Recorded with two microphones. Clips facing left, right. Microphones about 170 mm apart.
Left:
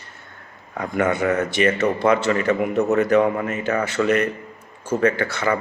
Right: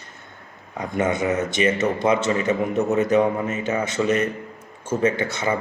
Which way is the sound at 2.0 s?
60° left (ahead or behind).